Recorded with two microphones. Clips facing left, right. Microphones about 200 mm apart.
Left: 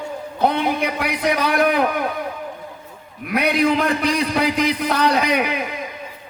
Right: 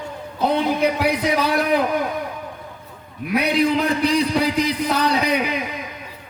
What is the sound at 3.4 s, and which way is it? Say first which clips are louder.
A man's voice: left 1 dB; 60° left (ahead or behind).